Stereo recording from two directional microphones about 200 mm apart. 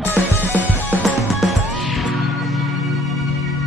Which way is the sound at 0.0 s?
10° left (ahead or behind).